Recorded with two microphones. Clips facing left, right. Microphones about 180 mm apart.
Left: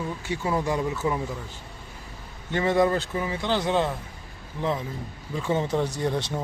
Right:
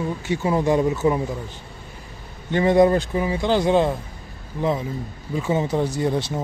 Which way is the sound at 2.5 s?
15° right (ahead or behind).